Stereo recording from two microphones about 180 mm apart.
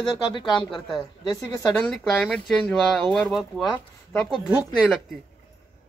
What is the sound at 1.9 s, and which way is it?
Speech, 5° left (ahead or behind).